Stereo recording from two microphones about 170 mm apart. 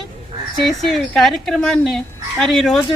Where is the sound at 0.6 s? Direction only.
Centre (ahead or behind).